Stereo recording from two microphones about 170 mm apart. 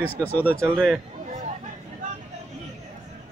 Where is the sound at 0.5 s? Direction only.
15° right (ahead or behind).